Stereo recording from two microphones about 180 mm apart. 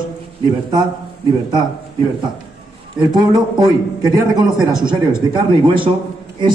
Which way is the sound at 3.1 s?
25° right (ahead or behind).